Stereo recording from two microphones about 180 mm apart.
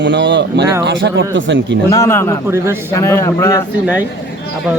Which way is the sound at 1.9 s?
15° left (ahead or behind).